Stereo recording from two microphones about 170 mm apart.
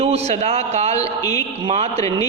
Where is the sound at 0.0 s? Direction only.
35° right (ahead or behind).